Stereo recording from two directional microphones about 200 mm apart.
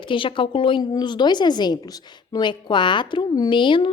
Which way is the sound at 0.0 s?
25° left (ahead or behind).